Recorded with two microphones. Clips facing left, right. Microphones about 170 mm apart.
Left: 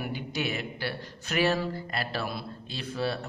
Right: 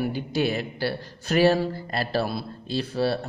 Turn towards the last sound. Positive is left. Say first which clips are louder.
# right 6 dB
turn(degrees=-35)  # may be behind; listen again after turning